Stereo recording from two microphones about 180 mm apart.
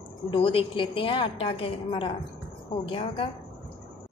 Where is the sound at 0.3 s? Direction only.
30° left (ahead or behind).